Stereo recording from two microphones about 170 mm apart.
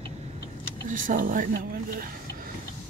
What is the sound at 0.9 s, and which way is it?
Speech, 50° right (ahead or behind).